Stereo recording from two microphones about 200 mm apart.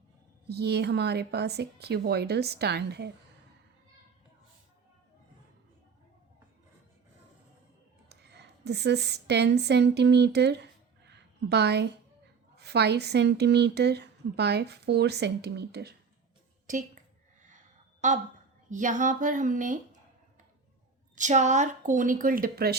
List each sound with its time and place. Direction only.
0.4 s speech: 55° right (ahead or behind)
8.1 s a woman's voice: 55° right (ahead or behind)
18.0 s speech: 35° right (ahead or behind)
21.2 s speech: 35° right (ahead or behind)